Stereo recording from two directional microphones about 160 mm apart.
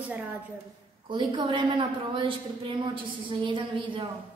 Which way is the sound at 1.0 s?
30° right (ahead or behind).